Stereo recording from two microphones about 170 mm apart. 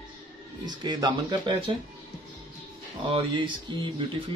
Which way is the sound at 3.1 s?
30° right (ahead or behind).